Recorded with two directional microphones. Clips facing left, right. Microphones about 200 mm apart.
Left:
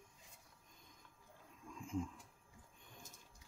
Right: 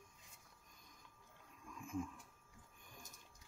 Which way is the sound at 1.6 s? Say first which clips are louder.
Left 2 dB; 25° left (ahead or behind).